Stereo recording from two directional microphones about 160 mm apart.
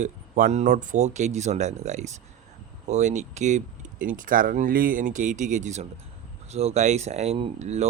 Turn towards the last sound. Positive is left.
turn(degrees=-45)  # may be behind; listen again after turning